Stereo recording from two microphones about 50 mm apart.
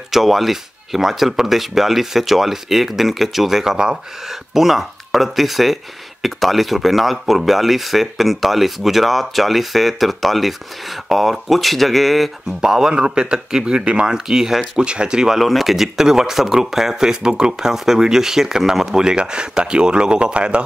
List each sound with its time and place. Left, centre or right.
0.1 s speech: centre
12.6 s speech: centre
14.8 s speech: centre
15.3 s speech: centre; by 20.6 s right